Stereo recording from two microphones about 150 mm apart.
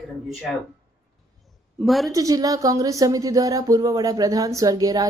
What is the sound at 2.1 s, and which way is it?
Speech, 25° right (ahead or behind).